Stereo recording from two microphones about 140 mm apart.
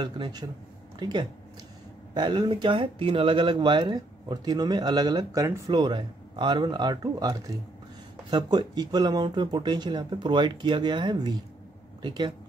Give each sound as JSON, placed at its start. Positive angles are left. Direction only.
{"t": 0.0, "sound": "speech", "side_deg": -30}